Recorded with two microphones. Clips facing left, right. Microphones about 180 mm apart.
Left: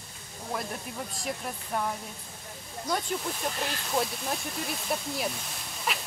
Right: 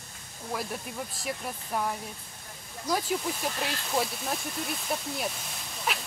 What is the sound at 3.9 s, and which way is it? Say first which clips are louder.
Speech: even; centre (ahead or behind).